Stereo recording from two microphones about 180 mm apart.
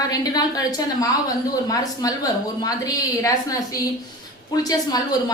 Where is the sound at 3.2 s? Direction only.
20° left (ahead or behind).